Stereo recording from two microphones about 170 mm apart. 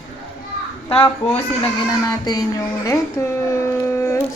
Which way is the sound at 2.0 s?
25° left (ahead or behind).